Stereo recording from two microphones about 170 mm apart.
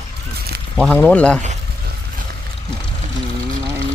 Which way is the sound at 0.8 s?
5° left (ahead or behind).